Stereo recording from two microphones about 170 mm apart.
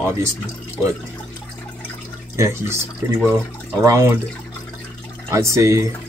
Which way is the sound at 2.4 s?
15° right (ahead or behind).